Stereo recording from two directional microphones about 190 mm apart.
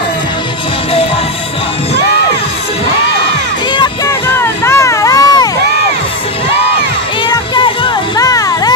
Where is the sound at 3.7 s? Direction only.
20° left (ahead or behind).